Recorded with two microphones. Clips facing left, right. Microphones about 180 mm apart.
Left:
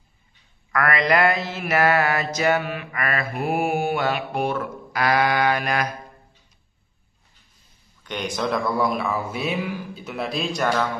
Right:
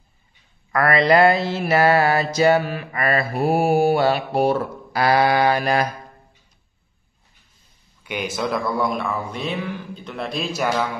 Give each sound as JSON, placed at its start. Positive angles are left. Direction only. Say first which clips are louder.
{"t": 0.7, "sound": "mantra", "louder": "right 4 dB", "side_deg": -30}
{"t": 8.0, "sound": "speech", "louder": "right 1 dB", "side_deg": -5}